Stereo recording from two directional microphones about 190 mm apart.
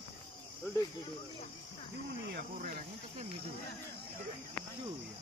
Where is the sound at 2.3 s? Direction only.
55° right (ahead or behind).